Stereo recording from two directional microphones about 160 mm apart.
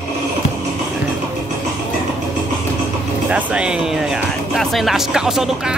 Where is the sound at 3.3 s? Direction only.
5° right (ahead or behind).